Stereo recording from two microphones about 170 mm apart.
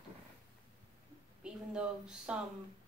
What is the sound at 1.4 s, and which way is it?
Speech, 5° right (ahead or behind).